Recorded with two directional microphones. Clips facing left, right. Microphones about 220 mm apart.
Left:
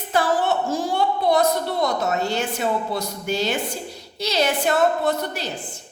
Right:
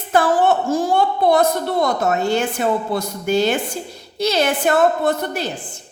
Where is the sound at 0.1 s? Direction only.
50° right (ahead or behind).